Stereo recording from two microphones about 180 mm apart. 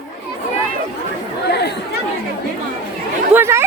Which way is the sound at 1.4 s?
65° left (ahead or behind).